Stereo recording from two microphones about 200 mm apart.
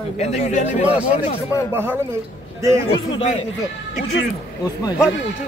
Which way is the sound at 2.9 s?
30° left (ahead or behind).